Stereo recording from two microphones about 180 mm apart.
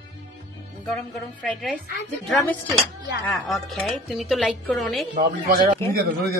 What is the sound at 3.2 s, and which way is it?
A woman's voice, 5° left (ahead or behind).